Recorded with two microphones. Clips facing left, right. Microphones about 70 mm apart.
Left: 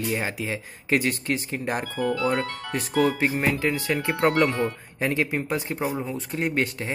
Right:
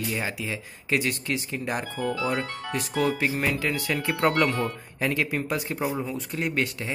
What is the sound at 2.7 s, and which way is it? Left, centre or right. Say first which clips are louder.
Speech: left 3 dB; left.